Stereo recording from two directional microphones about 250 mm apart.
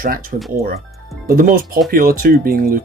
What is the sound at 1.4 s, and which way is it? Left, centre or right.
Speech, right.